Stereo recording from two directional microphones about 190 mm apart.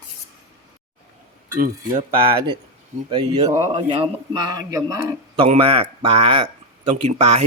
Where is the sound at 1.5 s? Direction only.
45° right (ahead or behind).